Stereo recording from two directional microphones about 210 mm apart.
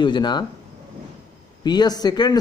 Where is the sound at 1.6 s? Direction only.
20° left (ahead or behind).